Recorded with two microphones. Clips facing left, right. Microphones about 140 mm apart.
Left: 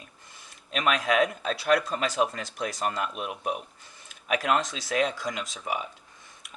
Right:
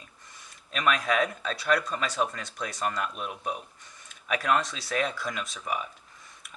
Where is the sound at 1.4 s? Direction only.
35° left (ahead or behind).